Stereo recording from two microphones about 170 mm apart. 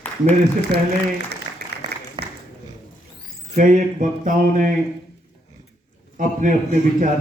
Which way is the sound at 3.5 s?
50° right (ahead or behind).